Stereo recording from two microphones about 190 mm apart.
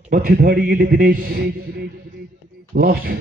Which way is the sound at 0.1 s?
50° right (ahead or behind).